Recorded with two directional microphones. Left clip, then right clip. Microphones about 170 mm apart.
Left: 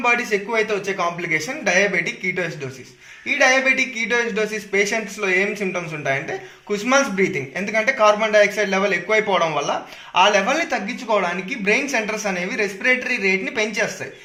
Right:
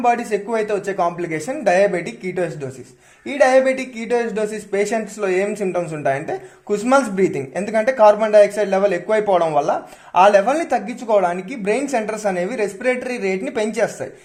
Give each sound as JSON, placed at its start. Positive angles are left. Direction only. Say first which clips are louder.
{"t": 0.0, "sound": "speech", "louder": "right 1 dB", "side_deg": -90}
{"t": 3.2, "sound": "speech", "louder": "right 2 dB", "side_deg": -90}